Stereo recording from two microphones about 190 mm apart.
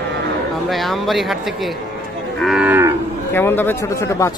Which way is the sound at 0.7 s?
Centre (ahead or behind).